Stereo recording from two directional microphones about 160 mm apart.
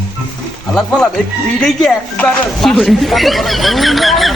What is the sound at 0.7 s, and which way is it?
Speech, centre (ahead or behind).